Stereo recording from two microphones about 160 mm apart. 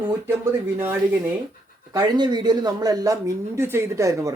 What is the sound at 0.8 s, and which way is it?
Speech, 15° right (ahead or behind).